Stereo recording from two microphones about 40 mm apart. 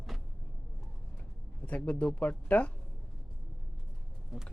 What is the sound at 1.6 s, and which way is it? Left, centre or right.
Speech, left.